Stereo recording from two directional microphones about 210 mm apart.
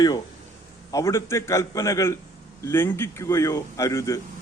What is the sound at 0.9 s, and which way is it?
A man's voice, 15° left (ahead or behind).